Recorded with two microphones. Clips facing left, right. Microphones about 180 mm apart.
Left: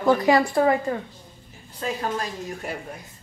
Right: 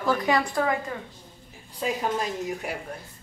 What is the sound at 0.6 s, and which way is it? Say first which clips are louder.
Speech: left 6 dB; 30° left (ahead or behind).